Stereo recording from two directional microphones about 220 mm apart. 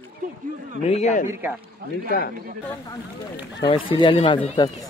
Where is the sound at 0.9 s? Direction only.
30° left (ahead or behind).